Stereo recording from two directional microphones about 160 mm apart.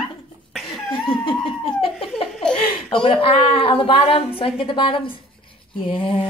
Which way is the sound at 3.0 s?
35° left (ahead or behind).